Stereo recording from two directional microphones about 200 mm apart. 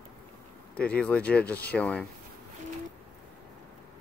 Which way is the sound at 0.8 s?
5° left (ahead or behind).